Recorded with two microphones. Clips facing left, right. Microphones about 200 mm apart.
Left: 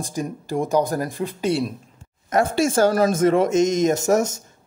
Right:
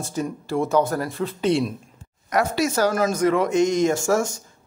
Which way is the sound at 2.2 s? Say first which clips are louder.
Left 2 dB; 25° left (ahead or behind).